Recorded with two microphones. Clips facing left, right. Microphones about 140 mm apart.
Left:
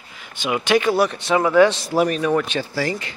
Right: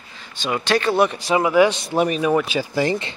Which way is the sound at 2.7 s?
20° right (ahead or behind).